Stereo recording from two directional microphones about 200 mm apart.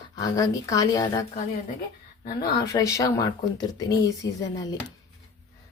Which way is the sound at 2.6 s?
15° left (ahead or behind).